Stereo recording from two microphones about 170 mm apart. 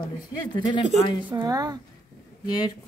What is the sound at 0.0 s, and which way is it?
Speech, 25° left (ahead or behind).